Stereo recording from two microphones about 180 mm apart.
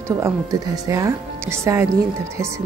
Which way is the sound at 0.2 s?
20° right (ahead or behind).